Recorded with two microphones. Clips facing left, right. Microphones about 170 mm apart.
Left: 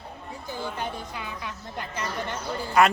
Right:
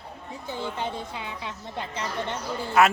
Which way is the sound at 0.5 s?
25° right (ahead or behind).